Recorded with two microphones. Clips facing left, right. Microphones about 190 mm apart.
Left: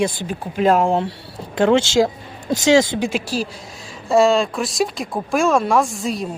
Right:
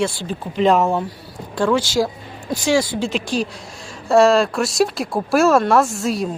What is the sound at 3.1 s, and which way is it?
Speech, 5° left (ahead or behind).